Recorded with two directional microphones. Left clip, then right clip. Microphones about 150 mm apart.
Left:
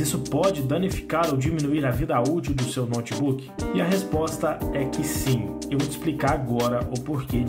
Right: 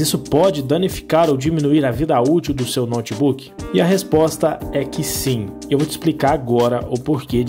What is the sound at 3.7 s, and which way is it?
Speech, 45° right (ahead or behind).